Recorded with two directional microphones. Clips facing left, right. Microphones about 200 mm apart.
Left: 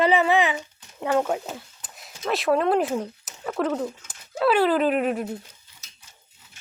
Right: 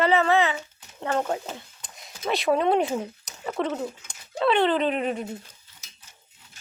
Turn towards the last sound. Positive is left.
turn(degrees=5)  # may be behind; listen again after turning